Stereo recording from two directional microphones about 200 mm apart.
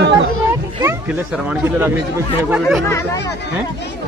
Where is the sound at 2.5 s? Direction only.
5° right (ahead or behind).